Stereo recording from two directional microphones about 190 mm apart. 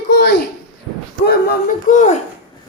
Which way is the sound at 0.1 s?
60° left (ahead or behind).